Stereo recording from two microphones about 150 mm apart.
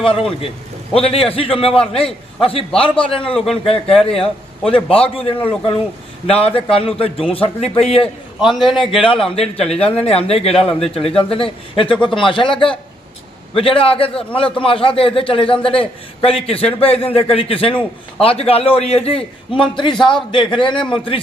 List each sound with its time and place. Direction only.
0.0 s a man's voice: 40° left (ahead or behind)
3.2 s a man's voice: 5° left (ahead or behind)
3.5 s a man's voice: 40° left (ahead or behind)
8.4 s a man's voice: centre (ahead or behind)
9.2 s a man's voice: 40° left (ahead or behind)